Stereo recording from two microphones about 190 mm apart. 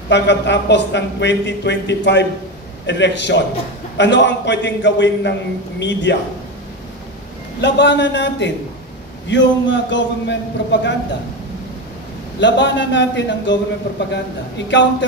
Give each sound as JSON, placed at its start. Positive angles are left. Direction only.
{"t": 0.1, "sound": "speech", "side_deg": 65}
{"t": 7.6, "sound": "speech", "side_deg": 65}
{"t": 12.4, "sound": "speech", "side_deg": 65}
{"t": 14.7, "sound": "speech", "side_deg": 70}